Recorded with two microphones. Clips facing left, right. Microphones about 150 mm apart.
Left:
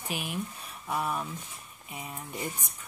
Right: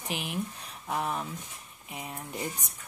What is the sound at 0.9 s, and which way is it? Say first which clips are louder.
Speech: even; 20° right (ahead or behind).